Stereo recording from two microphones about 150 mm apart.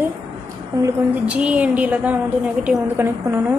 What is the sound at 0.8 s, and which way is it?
A woman's voice, 10° right (ahead or behind).